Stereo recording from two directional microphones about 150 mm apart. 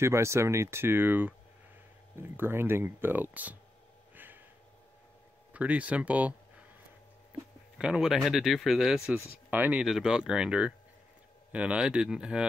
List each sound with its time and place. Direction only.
0.0 s speech: 20° right (ahead or behind)
4.1 s a sound: 15° right (ahead or behind)
5.5 s speech: 10° right (ahead or behind)
7.7 s speech: 5° right (ahead or behind)